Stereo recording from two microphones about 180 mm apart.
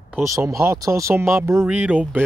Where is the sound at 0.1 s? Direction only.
15° right (ahead or behind).